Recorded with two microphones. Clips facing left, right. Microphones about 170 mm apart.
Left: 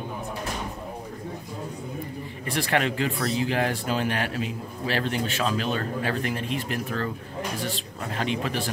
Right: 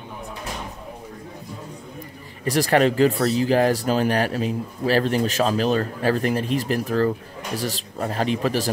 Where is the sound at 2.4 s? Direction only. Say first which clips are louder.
Right 7 dB; 40° right (ahead or behind).